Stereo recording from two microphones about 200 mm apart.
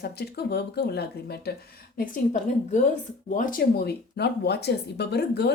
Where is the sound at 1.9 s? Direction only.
40° left (ahead or behind).